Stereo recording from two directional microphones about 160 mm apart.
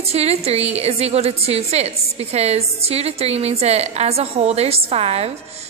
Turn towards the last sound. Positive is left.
turn(degrees=-40)  # may be behind; listen again after turning